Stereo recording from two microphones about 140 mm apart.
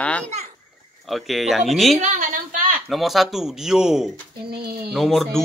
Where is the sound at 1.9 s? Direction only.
65° right (ahead or behind).